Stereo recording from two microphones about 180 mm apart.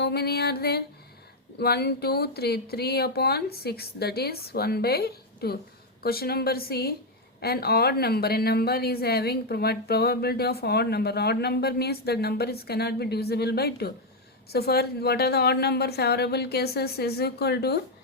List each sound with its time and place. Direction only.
0.0 s a woman's voice: 65° left (ahead or behind)